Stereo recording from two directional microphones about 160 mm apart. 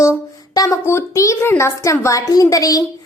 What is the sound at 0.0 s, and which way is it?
A woman's voice, 20° left (ahead or behind).